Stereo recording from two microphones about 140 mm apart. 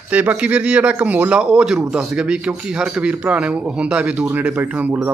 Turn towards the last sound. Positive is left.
turn(degrees=-10)  # may be behind; listen again after turning